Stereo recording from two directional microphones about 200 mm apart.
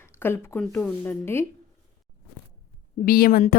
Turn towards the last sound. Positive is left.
turn(degrees=45)  # may be behind; listen again after turning